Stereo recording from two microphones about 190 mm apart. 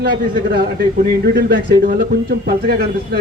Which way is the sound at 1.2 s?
55° right (ahead or behind).